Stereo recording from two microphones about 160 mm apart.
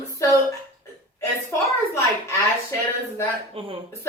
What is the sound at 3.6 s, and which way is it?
Speech, 35° right (ahead or behind).